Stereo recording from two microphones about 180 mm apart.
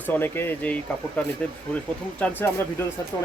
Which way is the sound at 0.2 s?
10° left (ahead or behind).